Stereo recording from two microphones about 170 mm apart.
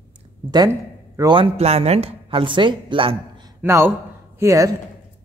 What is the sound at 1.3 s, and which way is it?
Speech, 35° right (ahead or behind).